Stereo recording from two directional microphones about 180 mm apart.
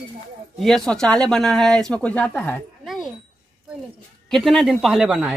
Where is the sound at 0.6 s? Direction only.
Centre (ahead or behind).